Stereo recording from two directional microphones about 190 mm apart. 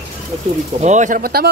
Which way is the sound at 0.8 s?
40° right (ahead or behind).